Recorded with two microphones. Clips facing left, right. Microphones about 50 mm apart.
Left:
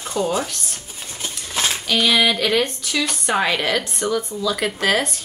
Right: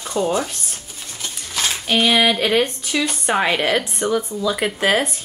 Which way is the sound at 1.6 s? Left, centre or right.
Left.